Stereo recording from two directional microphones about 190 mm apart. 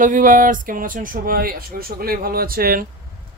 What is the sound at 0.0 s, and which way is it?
Speech, 45° right (ahead or behind).